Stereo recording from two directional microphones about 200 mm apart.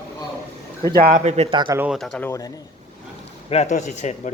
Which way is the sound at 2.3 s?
15° left (ahead or behind).